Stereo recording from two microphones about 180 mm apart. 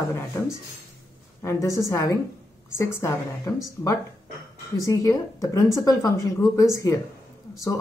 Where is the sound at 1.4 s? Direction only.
15° left (ahead or behind).